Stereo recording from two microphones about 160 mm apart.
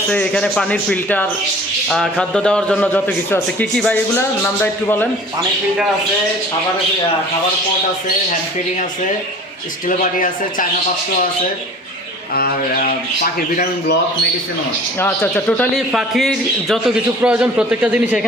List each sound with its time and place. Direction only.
0.1 s a man's voice: 5° left (ahead or behind)
10.0 s a man's voice: 55° left (ahead or behind)
12.3 s speech: 70° left (ahead or behind)
14.9 s a man's voice: 15° left (ahead or behind); by 18.3 s 10° right (ahead or behind)